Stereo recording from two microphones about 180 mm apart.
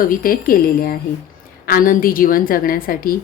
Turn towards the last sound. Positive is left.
turn(degrees=55)  # may be behind; listen again after turning